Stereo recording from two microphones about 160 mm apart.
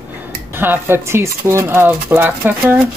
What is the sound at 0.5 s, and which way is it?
Speech, 15° right (ahead or behind).